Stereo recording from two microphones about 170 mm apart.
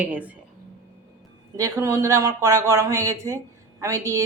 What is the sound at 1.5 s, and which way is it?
Speech, 15° right (ahead or behind).